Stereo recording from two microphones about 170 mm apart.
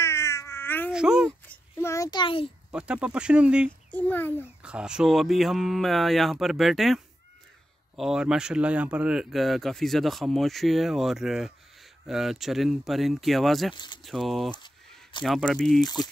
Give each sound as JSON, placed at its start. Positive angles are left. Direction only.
{"t": 0.0, "sound": "a sound", "side_deg": 15}
{"t": 0.9, "sound": "speech", "side_deg": -5}
{"t": 1.5, "sound": "a sound", "side_deg": 15}
{"t": 2.7, "sound": "speech", "side_deg": -5}
{"t": 3.9, "sound": "a child's voice", "side_deg": 10}
{"t": 4.6, "sound": "speech", "side_deg": -5}